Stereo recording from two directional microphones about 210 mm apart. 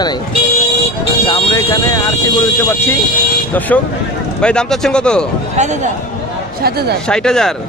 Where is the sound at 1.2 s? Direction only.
20° left (ahead or behind).